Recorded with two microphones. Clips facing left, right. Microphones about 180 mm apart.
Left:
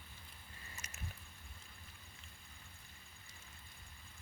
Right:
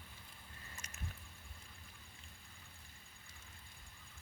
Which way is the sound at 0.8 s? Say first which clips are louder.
Even; 10° left (ahead or behind).